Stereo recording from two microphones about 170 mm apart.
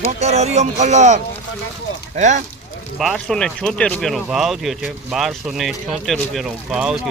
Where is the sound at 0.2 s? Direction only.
40° right (ahead or behind).